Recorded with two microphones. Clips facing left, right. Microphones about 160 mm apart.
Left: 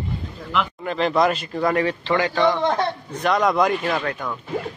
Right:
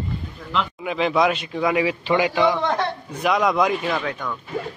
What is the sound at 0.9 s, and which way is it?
A man's voice, centre (ahead or behind).